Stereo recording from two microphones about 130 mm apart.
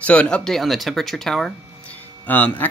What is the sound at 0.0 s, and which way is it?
Speech, 10° left (ahead or behind).